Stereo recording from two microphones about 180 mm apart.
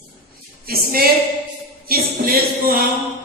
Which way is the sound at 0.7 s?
55° right (ahead or behind).